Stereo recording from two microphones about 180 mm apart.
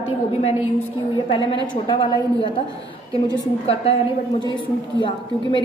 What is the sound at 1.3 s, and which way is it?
Speech, 30° left (ahead or behind).